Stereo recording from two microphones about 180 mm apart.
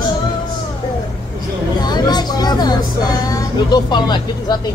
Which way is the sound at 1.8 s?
25° left (ahead or behind).